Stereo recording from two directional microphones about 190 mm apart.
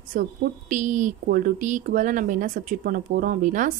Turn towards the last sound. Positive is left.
turn(degrees=-45)  # may be behind; listen again after turning